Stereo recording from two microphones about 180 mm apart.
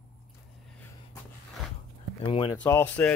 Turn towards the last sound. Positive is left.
turn(degrees=10)  # may be behind; listen again after turning